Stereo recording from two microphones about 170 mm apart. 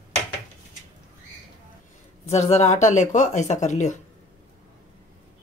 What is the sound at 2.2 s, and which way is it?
Speech, 40° left (ahead or behind).